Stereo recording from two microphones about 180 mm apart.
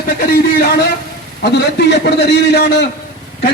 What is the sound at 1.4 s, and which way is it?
A man's voice, 70° left (ahead or behind).